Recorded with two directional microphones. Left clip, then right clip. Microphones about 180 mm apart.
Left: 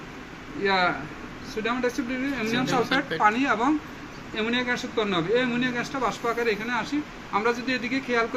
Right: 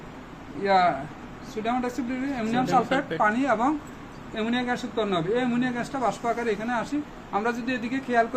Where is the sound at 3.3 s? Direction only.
80° right.